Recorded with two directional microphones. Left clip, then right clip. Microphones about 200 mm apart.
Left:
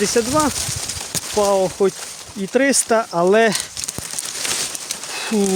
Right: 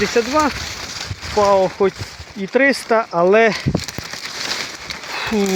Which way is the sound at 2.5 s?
25° left (ahead or behind).